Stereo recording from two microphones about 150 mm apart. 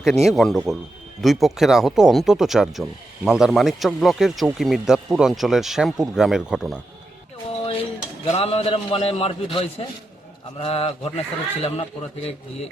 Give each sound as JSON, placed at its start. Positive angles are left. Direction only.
{"t": 0.0, "sound": "speech", "side_deg": 0}
{"t": 7.6, "sound": "dishes", "side_deg": 40}
{"t": 8.3, "sound": "a man's voice", "side_deg": 45}